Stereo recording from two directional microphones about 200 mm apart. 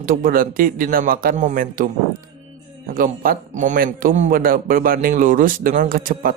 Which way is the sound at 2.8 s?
45° right (ahead or behind).